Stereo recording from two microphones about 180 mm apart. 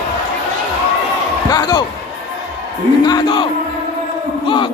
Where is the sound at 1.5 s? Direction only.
25° left (ahead or behind).